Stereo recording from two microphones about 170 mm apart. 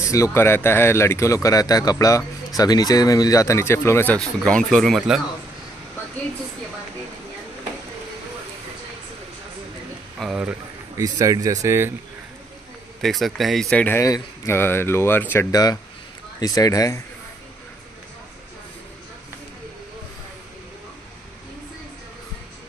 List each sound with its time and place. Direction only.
0.0 s speech: 15° left (ahead or behind); by 5.2 s centre (ahead or behind)
10.1 s a sound: 5° right (ahead or behind)
11.0 s speech: 20° right (ahead or behind)
13.0 s speech: centre (ahead or behind); by 17.0 s 20° left (ahead or behind)